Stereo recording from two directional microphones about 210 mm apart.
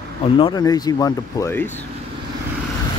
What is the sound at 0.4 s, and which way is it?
Speech, 20° left (ahead or behind).